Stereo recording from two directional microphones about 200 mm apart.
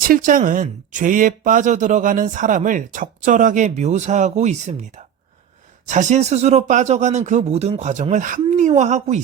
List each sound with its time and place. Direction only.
0.1 s speech: 40° right (ahead or behind)